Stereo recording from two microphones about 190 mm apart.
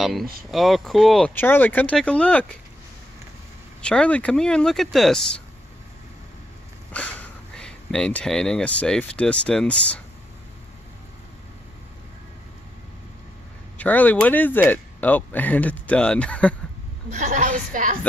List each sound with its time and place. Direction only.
0.0 s speech: centre (ahead or behind)
3.8 s speech: 5° left (ahead or behind)
6.9 s speech: 5° left (ahead or behind)
13.7 s speech: 10° left (ahead or behind)
17.1 s a woman's voice: 40° right (ahead or behind)